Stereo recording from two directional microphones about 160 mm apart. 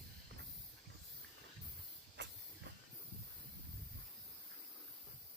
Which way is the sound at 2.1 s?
90° right.